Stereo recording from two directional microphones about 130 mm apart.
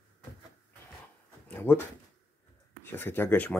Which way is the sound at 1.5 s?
15° left (ahead or behind).